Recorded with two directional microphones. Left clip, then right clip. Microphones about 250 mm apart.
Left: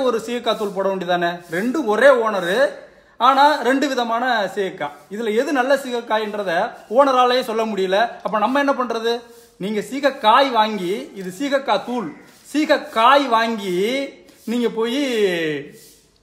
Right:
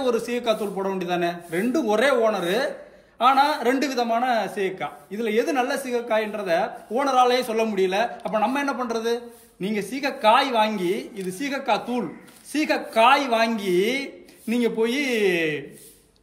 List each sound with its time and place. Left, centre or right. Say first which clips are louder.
0.0 s speech: left 3 dB; centre